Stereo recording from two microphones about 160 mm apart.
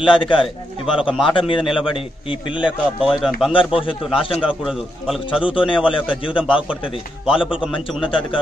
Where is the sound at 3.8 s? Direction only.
35° left (ahead or behind).